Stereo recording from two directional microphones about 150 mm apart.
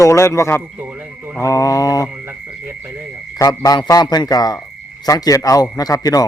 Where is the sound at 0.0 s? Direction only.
20° left (ahead or behind).